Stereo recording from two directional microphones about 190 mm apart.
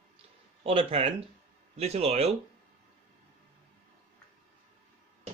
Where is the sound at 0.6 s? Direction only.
30° right (ahead or behind).